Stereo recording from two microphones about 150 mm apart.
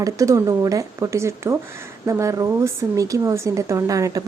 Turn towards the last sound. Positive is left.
turn(degrees=-20)  # may be behind; listen again after turning